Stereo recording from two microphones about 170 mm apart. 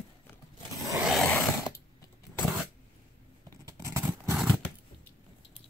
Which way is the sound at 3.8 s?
15° right (ahead or behind).